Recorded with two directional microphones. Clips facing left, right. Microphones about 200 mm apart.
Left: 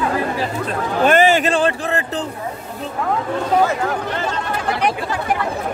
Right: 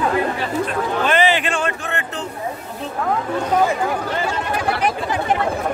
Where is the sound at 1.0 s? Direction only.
45° left (ahead or behind).